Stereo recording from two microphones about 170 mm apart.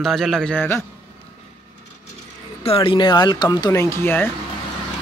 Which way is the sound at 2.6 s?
35° left (ahead or behind).